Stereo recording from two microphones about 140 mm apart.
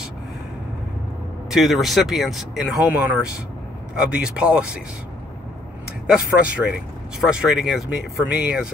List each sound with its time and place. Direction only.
1.5 s speech: centre (ahead or behind)
6.0 s speech: 10° right (ahead or behind)